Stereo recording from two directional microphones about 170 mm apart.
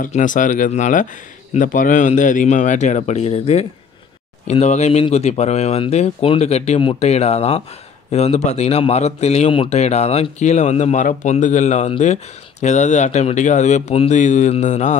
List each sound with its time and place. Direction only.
0.0 s speech: 50° left (ahead or behind)